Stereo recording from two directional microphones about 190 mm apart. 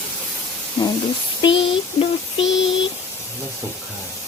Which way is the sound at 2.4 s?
75° left (ahead or behind).